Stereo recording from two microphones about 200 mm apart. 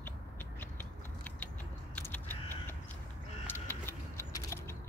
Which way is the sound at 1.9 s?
10° left (ahead or behind).